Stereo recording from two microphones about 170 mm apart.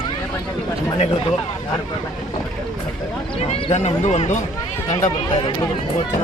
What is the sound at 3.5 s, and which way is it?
Speech, 40° left (ahead or behind).